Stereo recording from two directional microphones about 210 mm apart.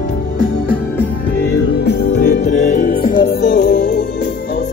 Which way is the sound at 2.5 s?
40° left (ahead or behind).